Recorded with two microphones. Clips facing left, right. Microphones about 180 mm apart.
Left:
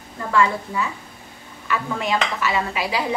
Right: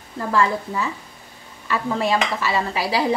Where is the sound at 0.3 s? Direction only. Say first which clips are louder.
Even; 35° right (ahead or behind).